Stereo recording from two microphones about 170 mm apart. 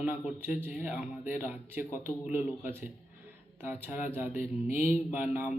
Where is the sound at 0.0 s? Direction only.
10° right (ahead or behind).